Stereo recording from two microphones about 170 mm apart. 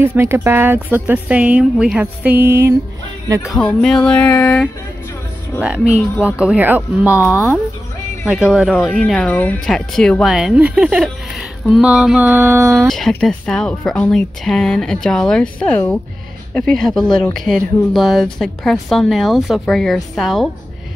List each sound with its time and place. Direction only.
0.0 s speech: 15° right (ahead or behind)
3.4 s music: 5° left (ahead or behind)
5.6 s speech: 5° right (ahead or behind)
7.2 s music: 15° left (ahead or behind)
8.3 s speech: 5° right (ahead or behind)
12.8 s speech: centre (ahead or behind)
15.6 s music: 10° left (ahead or behind)
16.5 s speech: 5° left (ahead or behind)